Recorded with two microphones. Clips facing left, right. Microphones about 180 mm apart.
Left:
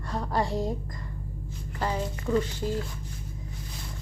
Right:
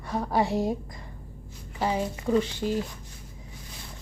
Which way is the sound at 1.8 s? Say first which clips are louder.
Right 3 dB; 15° right (ahead or behind).